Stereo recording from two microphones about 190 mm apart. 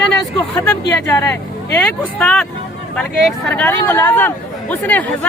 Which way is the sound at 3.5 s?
10° left (ahead or behind).